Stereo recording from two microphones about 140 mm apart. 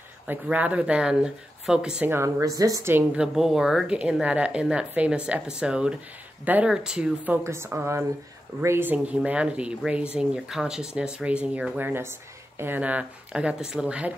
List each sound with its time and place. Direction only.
0.3 s speech: 10° right (ahead or behind)
3.3 s speech: 5° right (ahead or behind)
7.4 s speech: 20° right (ahead or behind)